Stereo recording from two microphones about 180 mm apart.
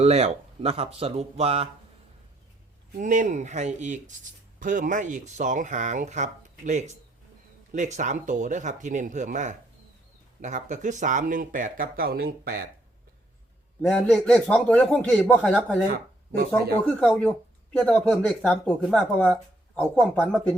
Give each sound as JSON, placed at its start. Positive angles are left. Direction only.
{"t": 0.0, "sound": "speech", "side_deg": -35}
{"t": 3.0, "sound": "speech", "side_deg": -45}
{"t": 13.8, "sound": "speech", "side_deg": 5}
{"t": 15.9, "sound": "speech", "side_deg": -55}
{"t": 16.8, "sound": "speech", "side_deg": 5}